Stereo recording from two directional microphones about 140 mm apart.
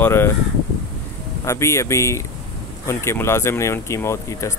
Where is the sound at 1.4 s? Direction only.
20° left (ahead or behind).